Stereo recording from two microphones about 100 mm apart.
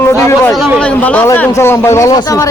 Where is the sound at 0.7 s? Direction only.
10° left (ahead or behind).